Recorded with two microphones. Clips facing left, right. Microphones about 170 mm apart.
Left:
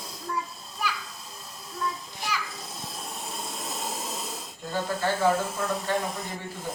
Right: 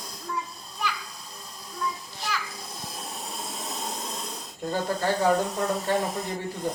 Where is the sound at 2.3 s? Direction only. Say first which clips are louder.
Even; 10° left (ahead or behind).